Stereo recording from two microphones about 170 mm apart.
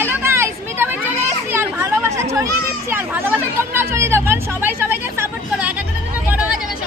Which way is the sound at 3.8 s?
15° right (ahead or behind).